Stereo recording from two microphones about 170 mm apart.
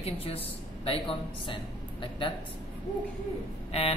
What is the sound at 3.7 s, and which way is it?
Speech, 35° left (ahead or behind).